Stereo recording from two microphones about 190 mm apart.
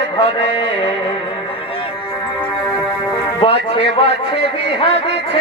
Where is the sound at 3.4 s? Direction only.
30° left (ahead or behind).